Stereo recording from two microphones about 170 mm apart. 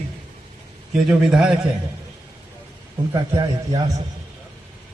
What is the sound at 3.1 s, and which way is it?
Speech, 25° right (ahead or behind).